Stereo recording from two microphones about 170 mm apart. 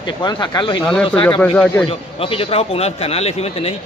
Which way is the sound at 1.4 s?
10° left (ahead or behind).